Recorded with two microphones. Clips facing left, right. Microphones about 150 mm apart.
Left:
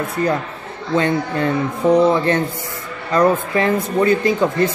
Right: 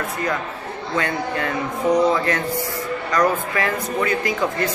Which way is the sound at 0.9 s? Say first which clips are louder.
Left 6 dB; 30° left (ahead or behind).